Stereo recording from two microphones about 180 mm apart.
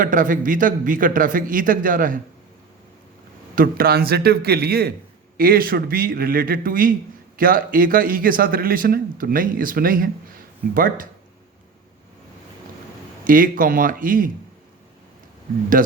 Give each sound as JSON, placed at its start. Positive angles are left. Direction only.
{"t": 0.0, "sound": "speech", "side_deg": -45}
{"t": 3.5, "sound": "a man's voice", "side_deg": -55}
{"t": 13.2, "sound": "speech", "side_deg": -50}